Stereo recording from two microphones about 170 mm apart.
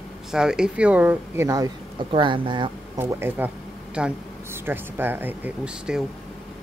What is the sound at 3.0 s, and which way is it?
Speech, 15° right (ahead or behind).